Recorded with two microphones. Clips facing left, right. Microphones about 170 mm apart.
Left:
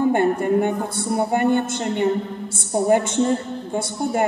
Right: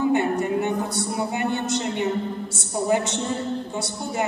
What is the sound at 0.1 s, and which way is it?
A man's voice, 50° left (ahead or behind).